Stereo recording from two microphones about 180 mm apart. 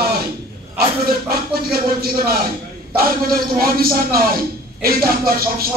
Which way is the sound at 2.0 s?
60° right (ahead or behind).